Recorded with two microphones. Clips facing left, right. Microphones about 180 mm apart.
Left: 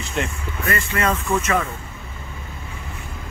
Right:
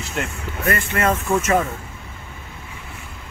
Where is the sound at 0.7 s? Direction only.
55° right (ahead or behind).